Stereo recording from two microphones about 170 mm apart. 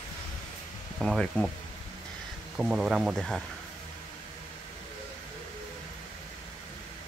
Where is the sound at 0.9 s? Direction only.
Centre (ahead or behind).